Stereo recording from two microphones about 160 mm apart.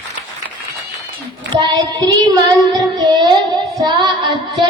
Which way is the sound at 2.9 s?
25° right (ahead or behind).